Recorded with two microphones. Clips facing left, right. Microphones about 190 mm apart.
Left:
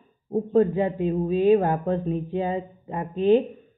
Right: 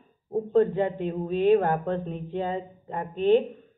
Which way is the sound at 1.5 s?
20° left (ahead or behind).